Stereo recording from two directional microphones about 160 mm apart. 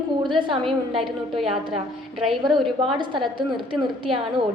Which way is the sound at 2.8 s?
30° right (ahead or behind).